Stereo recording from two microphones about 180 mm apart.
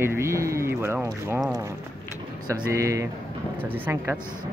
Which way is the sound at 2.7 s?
15° right (ahead or behind).